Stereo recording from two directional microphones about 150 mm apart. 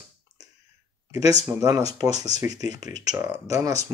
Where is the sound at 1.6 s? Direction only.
25° right (ahead or behind).